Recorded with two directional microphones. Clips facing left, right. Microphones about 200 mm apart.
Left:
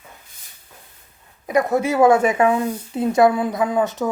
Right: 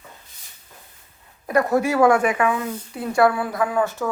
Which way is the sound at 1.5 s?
20° left (ahead or behind).